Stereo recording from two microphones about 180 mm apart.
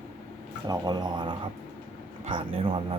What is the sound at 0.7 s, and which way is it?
Speech, 25° right (ahead or behind).